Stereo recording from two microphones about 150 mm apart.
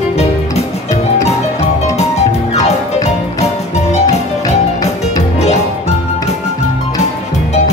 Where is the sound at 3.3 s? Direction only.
45° left (ahead or behind).